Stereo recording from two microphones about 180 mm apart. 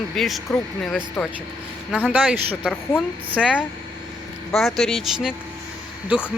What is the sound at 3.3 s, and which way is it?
Speech, 5° right (ahead or behind).